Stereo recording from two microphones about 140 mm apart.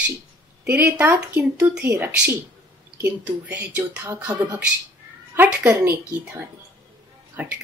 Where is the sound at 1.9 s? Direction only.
20° right (ahead or behind).